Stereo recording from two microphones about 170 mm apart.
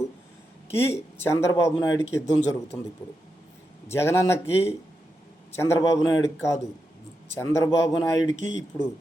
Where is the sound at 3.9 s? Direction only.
15° left (ahead or behind).